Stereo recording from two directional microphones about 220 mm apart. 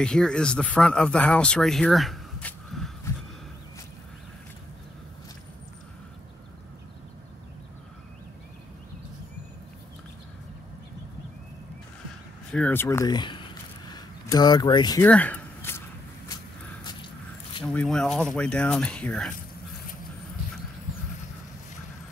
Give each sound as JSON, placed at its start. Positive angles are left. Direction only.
{"t": 0.0, "sound": "speech", "side_deg": 5}
{"t": 12.5, "sound": "speech", "side_deg": 10}
{"t": 15.0, "sound": "a sound", "side_deg": 5}
{"t": 17.6, "sound": "speech", "side_deg": 5}